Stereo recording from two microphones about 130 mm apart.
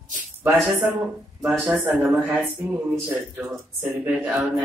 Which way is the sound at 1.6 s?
10° right (ahead or behind).